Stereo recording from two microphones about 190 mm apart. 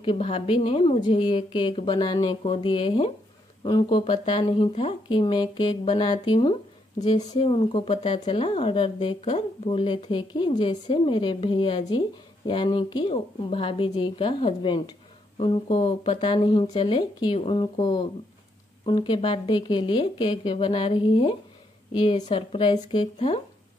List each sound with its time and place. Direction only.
0.0 s a woman's voice: 30° left (ahead or behind)